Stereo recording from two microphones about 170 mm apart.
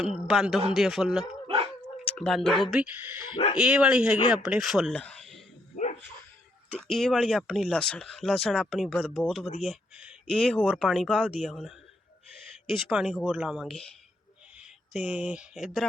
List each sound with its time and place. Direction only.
0.0 s speech: centre (ahead or behind)
1.5 s dog: 35° right (ahead or behind)
2.0 s speech: 5° left (ahead or behind)
5.7 s dog: 45° left (ahead or behind)
6.7 s speech: 5° left (ahead or behind)
12.9 s speech: centre (ahead or behind)